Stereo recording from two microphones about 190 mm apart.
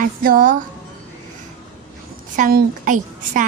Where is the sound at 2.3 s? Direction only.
45° right (ahead or behind).